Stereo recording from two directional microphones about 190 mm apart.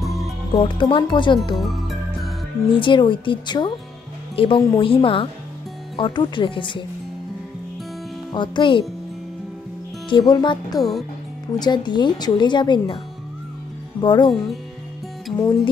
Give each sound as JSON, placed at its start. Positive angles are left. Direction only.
{"t": 0.0, "sound": "music", "side_deg": 0}
{"t": 0.6, "sound": "speech", "side_deg": 25}
{"t": 1.6, "sound": "music", "side_deg": 0}
{"t": 2.7, "sound": "speech", "side_deg": 25}
{"t": 8.3, "sound": "speech", "side_deg": 25}
{"t": 10.0, "sound": "speech", "side_deg": 25}
{"t": 14.0, "sound": "speech", "side_deg": 25}
{"t": 15.3, "sound": "speech", "side_deg": 20}